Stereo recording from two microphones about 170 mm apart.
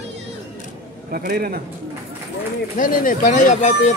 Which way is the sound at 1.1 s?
60° right (ahead or behind).